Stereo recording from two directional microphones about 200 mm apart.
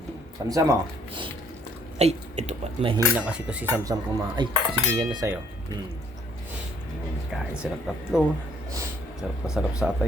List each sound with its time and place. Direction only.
0.4 s speech: 20° right (ahead or behind)
2.0 s speech: 35° right (ahead or behind)
3.1 s speech: 5° right (ahead or behind)
4.4 s cutlery: 20° right (ahead or behind)
7.3 s speech: 5° right (ahead or behind)
9.2 s speech: 5° right (ahead or behind)